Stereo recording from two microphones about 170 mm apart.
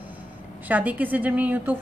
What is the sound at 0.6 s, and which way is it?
A woman's voice, 10° right (ahead or behind).